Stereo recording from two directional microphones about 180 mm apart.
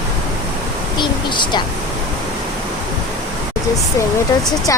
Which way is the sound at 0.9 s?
25° left (ahead or behind).